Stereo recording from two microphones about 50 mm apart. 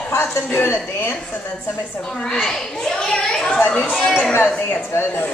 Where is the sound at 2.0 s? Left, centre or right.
Centre.